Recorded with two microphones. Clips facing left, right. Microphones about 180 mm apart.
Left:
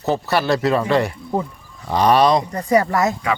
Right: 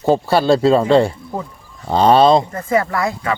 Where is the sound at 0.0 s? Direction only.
25° right (ahead or behind).